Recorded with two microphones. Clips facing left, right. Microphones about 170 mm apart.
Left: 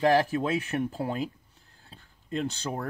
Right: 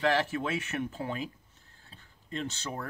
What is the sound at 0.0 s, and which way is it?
Speech, 30° left (ahead or behind).